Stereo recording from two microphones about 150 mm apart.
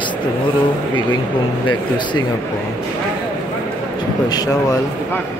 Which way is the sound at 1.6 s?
30° left (ahead or behind).